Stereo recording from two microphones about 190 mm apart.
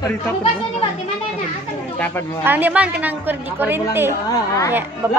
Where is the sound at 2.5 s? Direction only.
10° right (ahead or behind).